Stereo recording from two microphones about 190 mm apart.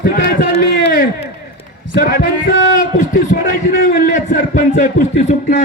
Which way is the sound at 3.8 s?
45° left (ahead or behind).